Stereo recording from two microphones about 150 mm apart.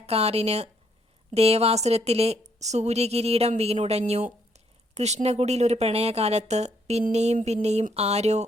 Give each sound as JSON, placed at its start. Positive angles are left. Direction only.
{"t": 0.0, "sound": "a woman's voice", "side_deg": -45}